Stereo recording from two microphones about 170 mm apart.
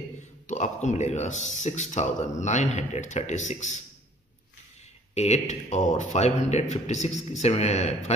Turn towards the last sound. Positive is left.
turn(degrees=40)  # may be behind; listen again after turning